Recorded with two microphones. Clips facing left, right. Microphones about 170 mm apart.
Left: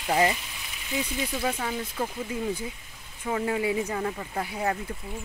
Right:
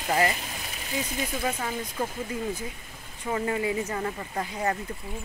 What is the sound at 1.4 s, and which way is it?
Speech, centre (ahead or behind).